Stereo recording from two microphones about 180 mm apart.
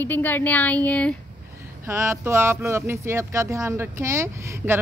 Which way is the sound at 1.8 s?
15° right (ahead or behind).